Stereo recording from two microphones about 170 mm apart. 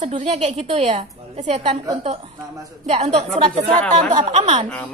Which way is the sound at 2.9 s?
40° right (ahead or behind).